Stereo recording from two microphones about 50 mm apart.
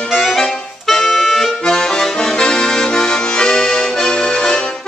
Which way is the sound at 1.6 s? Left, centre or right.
Centre.